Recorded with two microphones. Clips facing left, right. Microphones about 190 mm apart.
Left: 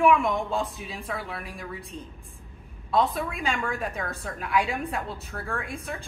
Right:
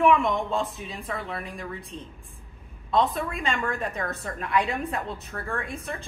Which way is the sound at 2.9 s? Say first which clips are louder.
Right 1 dB; centre (ahead or behind).